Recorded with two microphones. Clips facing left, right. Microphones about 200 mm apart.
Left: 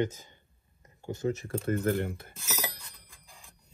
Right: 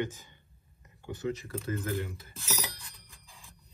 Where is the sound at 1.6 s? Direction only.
55° left (ahead or behind).